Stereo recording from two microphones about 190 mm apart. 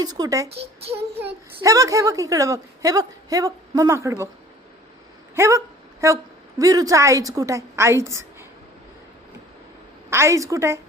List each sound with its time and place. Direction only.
0.0 s speech: 20° right (ahead or behind)
0.4 s a child's voice: 30° right (ahead or behind)
1.6 s a woman's voice: 15° right (ahead or behind)
5.3 s a sound: 15° right (ahead or behind)
6.6 s a woman's voice: 20° right (ahead or behind)
10.1 s a woman's voice: 15° right (ahead or behind)